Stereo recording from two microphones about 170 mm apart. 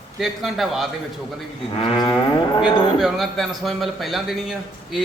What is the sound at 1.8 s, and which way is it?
Cattle, 30° left (ahead or behind).